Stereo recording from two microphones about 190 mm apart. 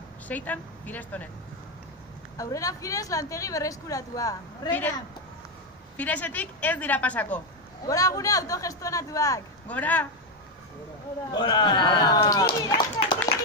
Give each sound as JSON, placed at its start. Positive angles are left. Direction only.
{"t": 0.3, "sound": "speech", "side_deg": 10}
{"t": 2.3, "sound": "speech", "side_deg": 15}
{"t": 5.9, "sound": "speech", "side_deg": 10}
{"t": 7.8, "sound": "speech", "side_deg": 15}
{"t": 11.3, "sound": "a man's voice", "side_deg": 25}